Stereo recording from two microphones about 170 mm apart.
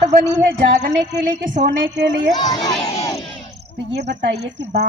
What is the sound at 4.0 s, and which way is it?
Speech, 85° right.